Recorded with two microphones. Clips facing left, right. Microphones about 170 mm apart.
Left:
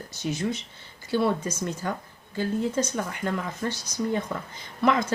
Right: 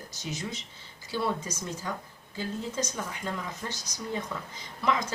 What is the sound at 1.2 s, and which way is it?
Speech, 60° left (ahead or behind).